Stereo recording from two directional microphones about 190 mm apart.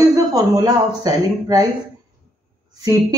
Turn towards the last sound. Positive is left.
turn(degrees=-20)  # may be behind; listen again after turning